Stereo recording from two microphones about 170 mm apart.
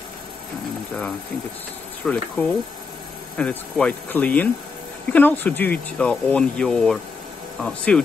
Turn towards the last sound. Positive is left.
turn(degrees=5)  # may be behind; listen again after turning